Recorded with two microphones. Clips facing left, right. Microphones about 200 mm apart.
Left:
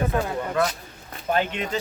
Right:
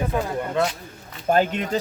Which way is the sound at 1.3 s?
40° right (ahead or behind).